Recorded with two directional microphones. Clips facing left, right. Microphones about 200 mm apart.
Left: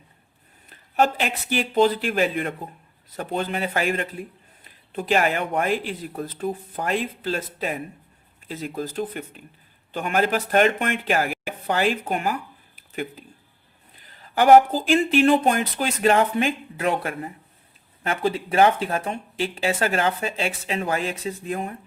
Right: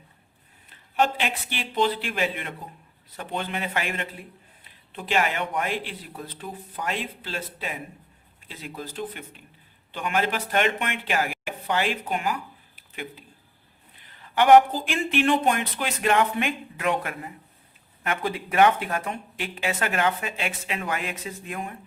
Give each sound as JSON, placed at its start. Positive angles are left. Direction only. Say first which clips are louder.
{"t": 0.9, "sound": "speech", "louder": "left 3 dB", "side_deg": 40}
{"t": 12.0, "sound": "a sound", "louder": "left 2 dB", "side_deg": 45}
{"t": 14.1, "sound": "speech", "louder": "left 2 dB", "side_deg": 40}